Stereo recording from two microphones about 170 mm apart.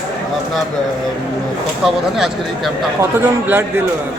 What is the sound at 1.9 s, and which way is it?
Speech, centre (ahead or behind).